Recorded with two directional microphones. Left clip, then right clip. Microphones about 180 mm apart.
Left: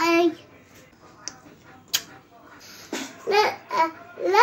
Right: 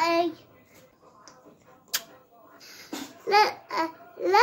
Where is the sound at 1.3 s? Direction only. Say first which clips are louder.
Left 15 dB; 25° right (ahead or behind).